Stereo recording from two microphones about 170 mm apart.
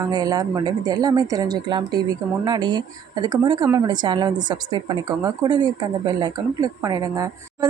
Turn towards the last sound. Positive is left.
turn(degrees=-20)  # may be behind; listen again after turning